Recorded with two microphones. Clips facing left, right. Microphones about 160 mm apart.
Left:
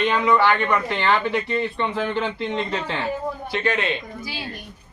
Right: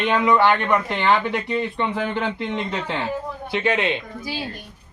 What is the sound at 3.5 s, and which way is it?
Speech, 15° right (ahead or behind).